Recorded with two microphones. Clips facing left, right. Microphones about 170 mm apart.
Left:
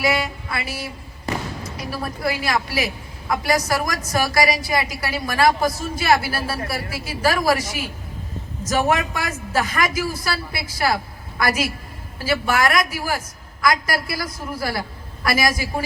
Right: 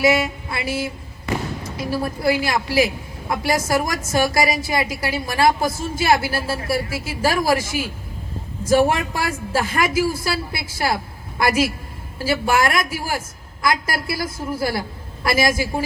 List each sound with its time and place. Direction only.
0.0 s a woman's voice: 25° right (ahead or behind)
8.9 s a woman's voice: 30° right (ahead or behind)